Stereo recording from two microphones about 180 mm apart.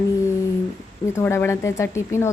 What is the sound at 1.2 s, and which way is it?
A woman's voice, 15° left (ahead or behind).